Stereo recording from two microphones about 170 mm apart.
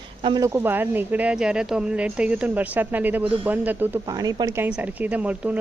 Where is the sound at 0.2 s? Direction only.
30° right (ahead or behind).